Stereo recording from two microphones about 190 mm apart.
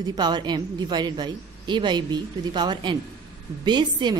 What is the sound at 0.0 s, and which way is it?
A woman's voice, 20° right (ahead or behind).